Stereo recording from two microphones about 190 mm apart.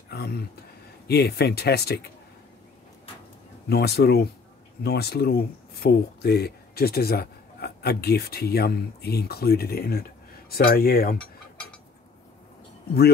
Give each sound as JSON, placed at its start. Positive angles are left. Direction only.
{"t": 0.1, "sound": "speech", "side_deg": 55}
{"t": 3.6, "sound": "speech", "side_deg": 55}